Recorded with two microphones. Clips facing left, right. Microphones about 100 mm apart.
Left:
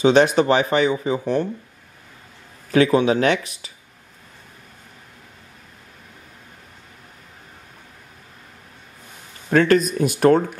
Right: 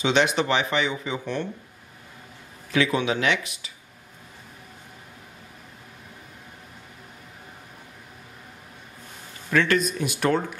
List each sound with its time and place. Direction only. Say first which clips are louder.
0.0 s speech: left 7 dB; 40° left (ahead or behind)
2.7 s speech: left 7 dB; 40° left (ahead or behind)
9.5 s speech: left 6 dB; 40° left (ahead or behind)